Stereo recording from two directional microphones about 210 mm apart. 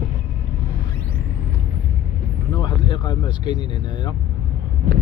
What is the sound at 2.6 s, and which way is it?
Vehicle, 20° left (ahead or behind).